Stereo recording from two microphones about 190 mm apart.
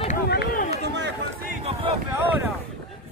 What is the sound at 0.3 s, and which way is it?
Run, 55° left (ahead or behind).